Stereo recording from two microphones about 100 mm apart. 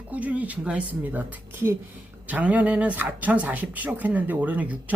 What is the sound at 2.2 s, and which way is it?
Speech, 15° right (ahead or behind).